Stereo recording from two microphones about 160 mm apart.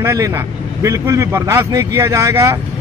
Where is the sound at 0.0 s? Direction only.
20° right (ahead or behind).